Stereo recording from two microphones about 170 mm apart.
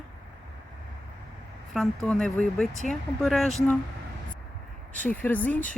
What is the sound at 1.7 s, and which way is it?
Speech, centre (ahead or behind).